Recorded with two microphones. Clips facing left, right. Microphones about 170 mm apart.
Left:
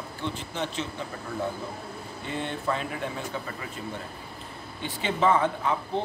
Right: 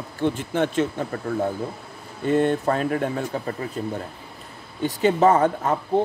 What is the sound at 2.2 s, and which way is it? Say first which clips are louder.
Speech: right 12 dB; 45° right (ahead or behind).